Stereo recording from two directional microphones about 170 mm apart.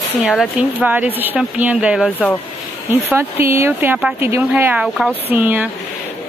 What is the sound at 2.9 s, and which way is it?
Speech, 15° right (ahead or behind).